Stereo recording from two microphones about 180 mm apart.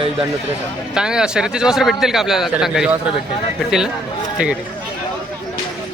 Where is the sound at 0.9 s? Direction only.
5° right (ahead or behind).